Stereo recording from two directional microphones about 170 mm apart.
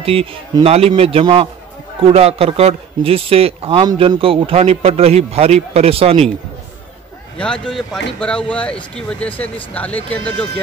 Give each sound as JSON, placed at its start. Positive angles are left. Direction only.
{"t": 0.0, "sound": "a man's voice", "side_deg": -35}
{"t": 7.3, "sound": "speech", "side_deg": 5}